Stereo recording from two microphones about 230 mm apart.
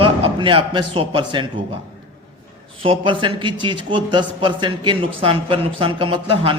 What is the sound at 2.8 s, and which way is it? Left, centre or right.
A man's voice, right.